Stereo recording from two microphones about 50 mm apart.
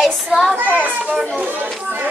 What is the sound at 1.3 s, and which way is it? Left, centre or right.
Speech, right.